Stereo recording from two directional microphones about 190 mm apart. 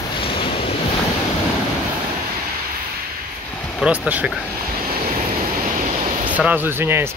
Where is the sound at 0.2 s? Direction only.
30° left (ahead or behind).